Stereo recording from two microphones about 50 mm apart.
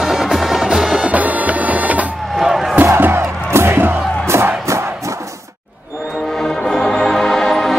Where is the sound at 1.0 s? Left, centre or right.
Right.